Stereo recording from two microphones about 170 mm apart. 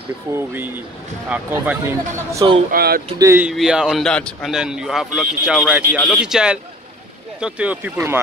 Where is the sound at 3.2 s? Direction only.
15° right (ahead or behind).